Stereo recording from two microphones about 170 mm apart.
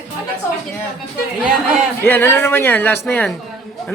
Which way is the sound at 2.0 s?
10° left (ahead or behind).